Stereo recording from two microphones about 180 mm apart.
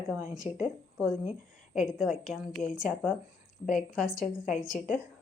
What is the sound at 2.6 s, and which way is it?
Speech, 45° left (ahead or behind).